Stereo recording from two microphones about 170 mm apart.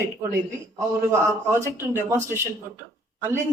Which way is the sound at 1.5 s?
15° right (ahead or behind).